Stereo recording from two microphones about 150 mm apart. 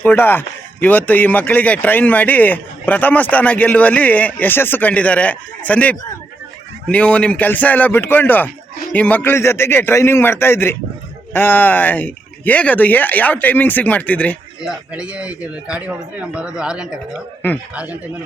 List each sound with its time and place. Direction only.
0.0 s speech: 15° left (ahead or behind)
14.6 s speech: 5° right (ahead or behind)